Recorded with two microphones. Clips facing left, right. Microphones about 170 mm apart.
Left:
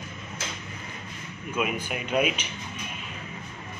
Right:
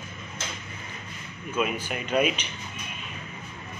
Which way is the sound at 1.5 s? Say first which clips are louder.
Right 1 dB; 10° left (ahead or behind).